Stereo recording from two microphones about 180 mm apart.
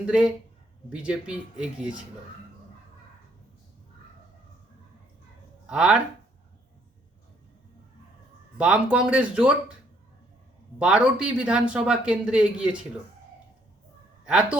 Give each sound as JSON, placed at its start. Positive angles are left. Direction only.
{"t": 0.0, "sound": "speech", "side_deg": -5}
{"t": 5.6, "sound": "speech", "side_deg": -5}
{"t": 8.5, "sound": "speech", "side_deg": -5}
{"t": 10.8, "sound": "speech", "side_deg": -5}
{"t": 14.3, "sound": "speech", "side_deg": -5}